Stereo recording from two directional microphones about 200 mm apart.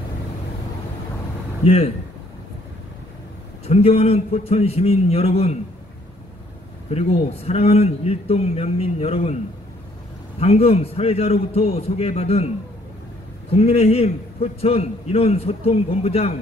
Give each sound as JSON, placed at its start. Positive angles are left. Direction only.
{"t": 1.6, "sound": "speech", "side_deg": 30}
{"t": 3.6, "sound": "a man's voice", "side_deg": 30}
{"t": 6.9, "sound": "a man's voice", "side_deg": 30}
{"t": 10.4, "sound": "a man's voice", "side_deg": 30}
{"t": 13.5, "sound": "a man's voice", "side_deg": 30}